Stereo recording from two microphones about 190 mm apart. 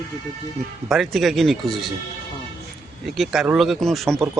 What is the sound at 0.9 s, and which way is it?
Speech, centre (ahead or behind).